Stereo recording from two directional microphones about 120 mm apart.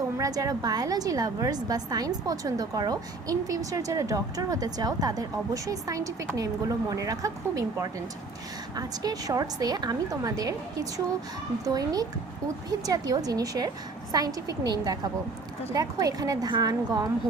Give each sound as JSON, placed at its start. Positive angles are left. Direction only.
{"t": 0.2, "sound": "a woman's voice", "side_deg": -30}